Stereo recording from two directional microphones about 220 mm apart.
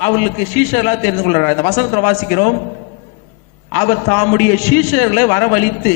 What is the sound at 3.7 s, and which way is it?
A man's voice, 20° left (ahead or behind).